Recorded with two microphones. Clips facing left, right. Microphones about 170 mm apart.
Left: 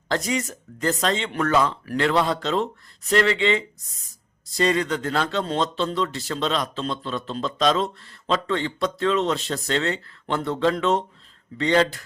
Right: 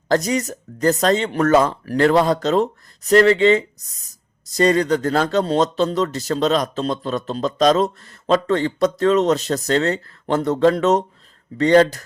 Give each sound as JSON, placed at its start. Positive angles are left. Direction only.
{"t": 0.1, "sound": "speech", "side_deg": -40}